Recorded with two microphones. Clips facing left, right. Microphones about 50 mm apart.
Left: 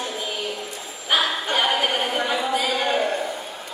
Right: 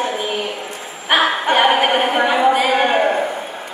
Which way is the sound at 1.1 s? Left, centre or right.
Right.